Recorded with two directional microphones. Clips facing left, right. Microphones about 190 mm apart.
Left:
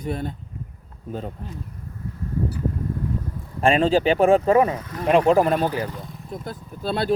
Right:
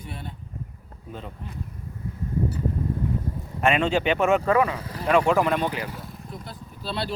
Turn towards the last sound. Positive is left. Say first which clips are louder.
# left 6 dB
turn(degrees=50)  # may be behind; listen again after turning